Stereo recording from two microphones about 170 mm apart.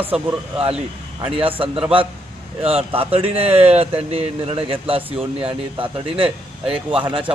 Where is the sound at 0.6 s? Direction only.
35° right (ahead or behind).